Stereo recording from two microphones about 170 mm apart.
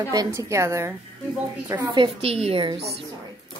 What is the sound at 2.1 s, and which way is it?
Speech, 35° right (ahead or behind).